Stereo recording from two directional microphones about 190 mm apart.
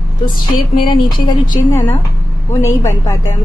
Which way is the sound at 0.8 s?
25° left (ahead or behind).